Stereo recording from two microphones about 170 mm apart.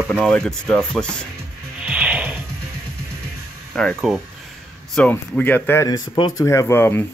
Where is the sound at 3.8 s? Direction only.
5° left (ahead or behind).